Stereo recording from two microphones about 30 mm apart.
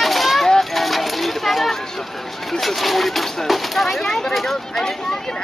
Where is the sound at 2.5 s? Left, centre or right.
Centre.